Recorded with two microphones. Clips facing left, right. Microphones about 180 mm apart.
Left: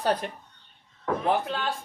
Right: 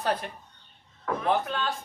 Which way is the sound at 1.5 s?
30° left (ahead or behind).